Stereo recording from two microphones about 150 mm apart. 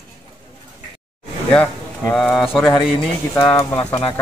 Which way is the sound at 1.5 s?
10° left (ahead or behind).